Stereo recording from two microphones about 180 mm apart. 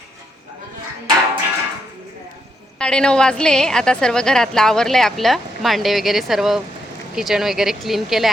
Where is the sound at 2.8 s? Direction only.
5° left (ahead or behind).